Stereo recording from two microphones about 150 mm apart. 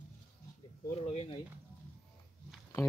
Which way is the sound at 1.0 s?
40° left (ahead or behind).